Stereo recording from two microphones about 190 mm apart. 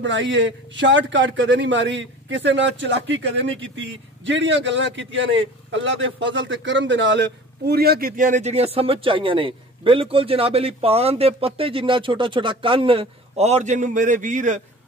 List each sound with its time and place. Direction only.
0.0 s a man's voice: 75° right (ahead or behind); by 14.6 s 40° right (ahead or behind)